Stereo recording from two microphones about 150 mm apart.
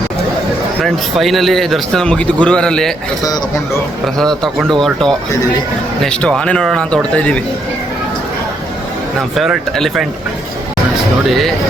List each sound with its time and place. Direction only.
0.8 s speech: centre (ahead or behind)
4.0 s a man's voice: centre (ahead or behind)
9.3 s speech: centre (ahead or behind)
11.3 s speech: centre (ahead or behind)